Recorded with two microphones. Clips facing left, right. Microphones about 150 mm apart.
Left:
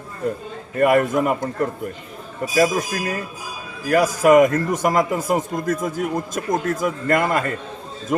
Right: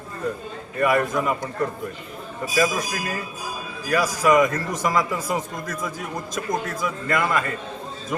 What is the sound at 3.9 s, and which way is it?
A man's voice, 50° left (ahead or behind).